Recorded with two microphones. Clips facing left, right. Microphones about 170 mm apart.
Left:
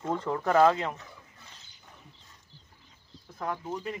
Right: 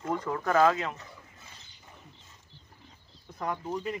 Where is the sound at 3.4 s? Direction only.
Centre (ahead or behind).